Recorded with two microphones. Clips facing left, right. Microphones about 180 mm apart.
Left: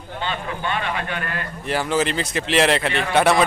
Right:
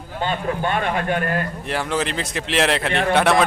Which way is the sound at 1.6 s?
Centre (ahead or behind).